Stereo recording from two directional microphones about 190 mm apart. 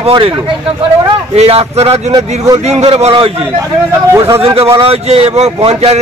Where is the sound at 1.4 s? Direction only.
30° right (ahead or behind).